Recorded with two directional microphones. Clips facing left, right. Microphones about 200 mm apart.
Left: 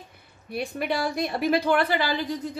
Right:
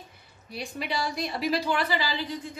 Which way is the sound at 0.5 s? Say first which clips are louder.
Left 6 dB; 55° left (ahead or behind).